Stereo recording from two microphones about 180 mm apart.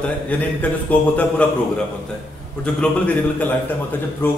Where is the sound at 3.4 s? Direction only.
10° left (ahead or behind).